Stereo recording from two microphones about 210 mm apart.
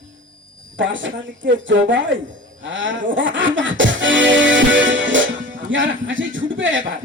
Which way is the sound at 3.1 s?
60° right (ahead or behind).